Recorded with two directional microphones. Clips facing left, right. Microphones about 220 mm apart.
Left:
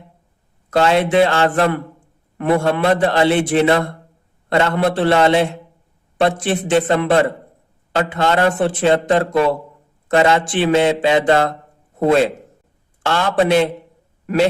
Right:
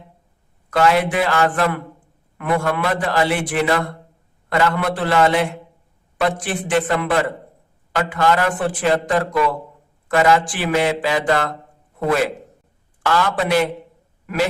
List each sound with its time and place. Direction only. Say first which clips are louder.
0.7 s a man's voice: left 2 dB; 25° left (ahead or behind)